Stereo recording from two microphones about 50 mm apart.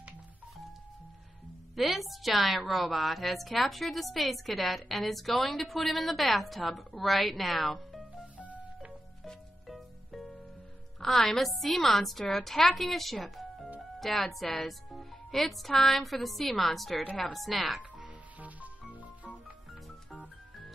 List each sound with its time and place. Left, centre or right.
1.8 s a woman's voice: centre
8.4 s music: right
9.7 s music: centre
11.0 s a woman's voice: centre
17.9 s music: right